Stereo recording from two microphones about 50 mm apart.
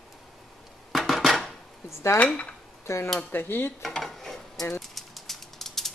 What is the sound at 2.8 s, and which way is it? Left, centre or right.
Speech, left.